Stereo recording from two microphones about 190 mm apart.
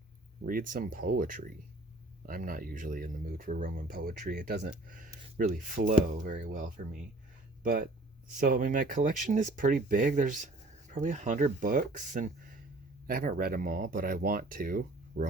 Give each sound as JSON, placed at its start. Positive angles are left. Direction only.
{"t": 0.4, "sound": "speech", "side_deg": -45}
{"t": 4.6, "sound": "speech", "side_deg": -45}